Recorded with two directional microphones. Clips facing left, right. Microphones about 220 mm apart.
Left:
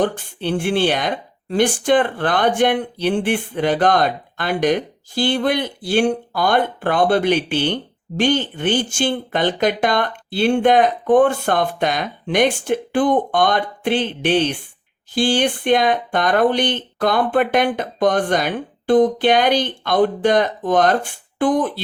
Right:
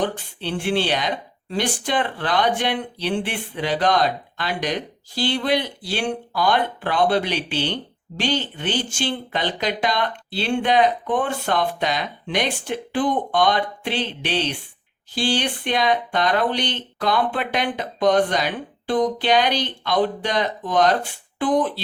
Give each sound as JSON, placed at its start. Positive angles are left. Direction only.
{"t": 0.0, "sound": "speech", "side_deg": 50}